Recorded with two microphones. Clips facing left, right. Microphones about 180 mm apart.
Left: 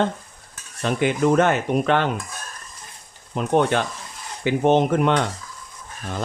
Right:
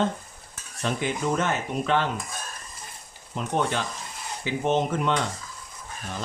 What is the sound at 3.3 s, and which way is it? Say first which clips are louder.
Speech: left 7 dB; 65° left (ahead or behind).